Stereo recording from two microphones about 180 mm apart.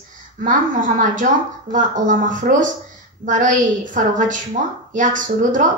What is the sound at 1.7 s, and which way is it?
A woman's voice, 45° right (ahead or behind).